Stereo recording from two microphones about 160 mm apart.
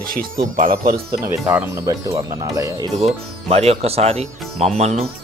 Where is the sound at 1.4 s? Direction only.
20° right (ahead or behind).